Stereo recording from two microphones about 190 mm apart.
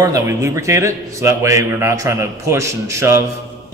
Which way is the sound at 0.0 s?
15° right (ahead or behind).